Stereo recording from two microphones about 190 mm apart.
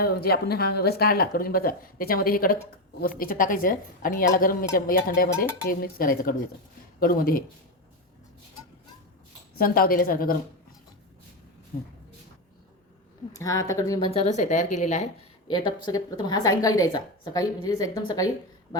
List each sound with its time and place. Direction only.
0.0 s speech: 55° left (ahead or behind)
9.6 s speech: 50° left (ahead or behind)
11.7 s speech: 50° left (ahead or behind)
13.3 s speech: 15° left (ahead or behind)
14.1 s speech: 35° left (ahead or behind)
15.4 s speech: 25° left (ahead or behind)